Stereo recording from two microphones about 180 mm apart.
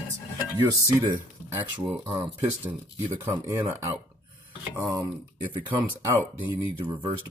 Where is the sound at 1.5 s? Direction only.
15° right (ahead or behind).